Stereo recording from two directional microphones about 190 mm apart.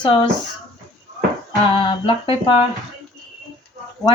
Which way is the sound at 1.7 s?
25° left (ahead or behind).